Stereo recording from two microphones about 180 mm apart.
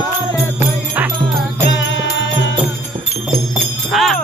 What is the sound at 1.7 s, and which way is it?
Music, 90° left.